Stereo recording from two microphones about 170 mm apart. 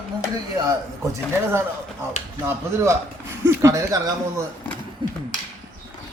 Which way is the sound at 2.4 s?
15° right (ahead or behind).